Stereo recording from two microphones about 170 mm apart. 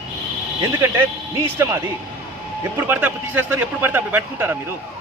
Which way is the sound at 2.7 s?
10° right (ahead or behind).